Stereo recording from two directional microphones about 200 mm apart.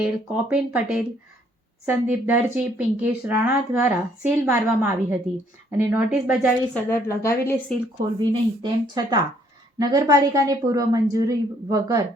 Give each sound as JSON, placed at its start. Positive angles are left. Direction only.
{"t": 0.5, "sound": "speech", "side_deg": -5}
{"t": 6.7, "sound": "a woman's voice", "side_deg": 10}
{"t": 8.2, "sound": "a woman's voice", "side_deg": -20}